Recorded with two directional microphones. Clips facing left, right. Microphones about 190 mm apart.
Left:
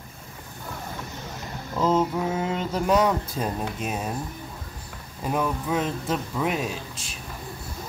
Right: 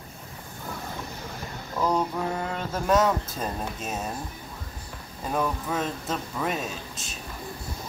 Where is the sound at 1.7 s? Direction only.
20° left (ahead or behind).